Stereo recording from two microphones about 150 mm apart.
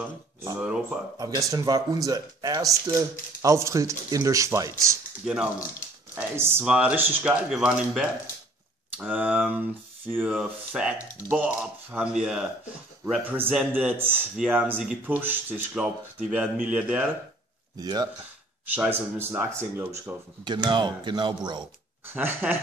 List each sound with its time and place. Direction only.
1.1 s speech: 25° right (ahead or behind)
5.2 s speech: 5° right (ahead or behind)
17.7 s speech: 25° right (ahead or behind)
18.8 s speech: 15° right (ahead or behind)
20.4 s speech: 30° right (ahead or behind)
22.0 s speech: 15° right (ahead or behind)